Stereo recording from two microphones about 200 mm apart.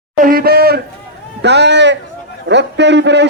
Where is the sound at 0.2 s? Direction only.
45° right (ahead or behind).